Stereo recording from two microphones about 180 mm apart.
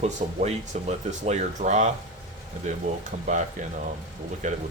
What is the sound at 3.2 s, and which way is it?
Speech, 40° right (ahead or behind).